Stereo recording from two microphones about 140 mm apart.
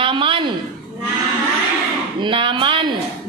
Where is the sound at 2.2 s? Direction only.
35° right (ahead or behind).